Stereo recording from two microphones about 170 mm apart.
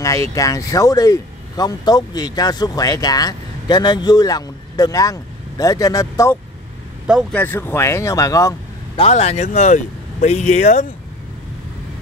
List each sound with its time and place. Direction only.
0.3 s speech: 20° left (ahead or behind)
7.3 s speech: 10° left (ahead or behind)
8.9 s speech: 35° left (ahead or behind)